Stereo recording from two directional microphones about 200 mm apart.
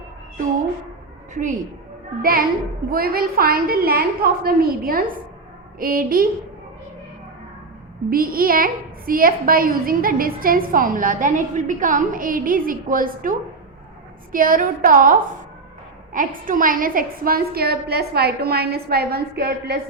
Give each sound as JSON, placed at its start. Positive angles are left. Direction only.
{"t": 1.3, "sound": "a woman's voice", "side_deg": -40}
{"t": 2.9, "sound": "a woman's voice", "side_deg": -50}
{"t": 8.1, "sound": "a woman's voice", "side_deg": -45}
{"t": 14.3, "sound": "a woman's voice", "side_deg": -45}